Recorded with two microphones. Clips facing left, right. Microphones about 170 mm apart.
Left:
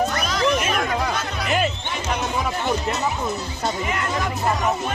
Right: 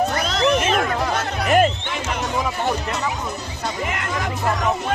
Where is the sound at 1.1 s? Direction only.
50° right (ahead or behind).